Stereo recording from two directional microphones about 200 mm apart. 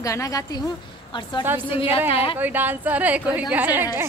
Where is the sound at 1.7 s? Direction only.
25° left (ahead or behind).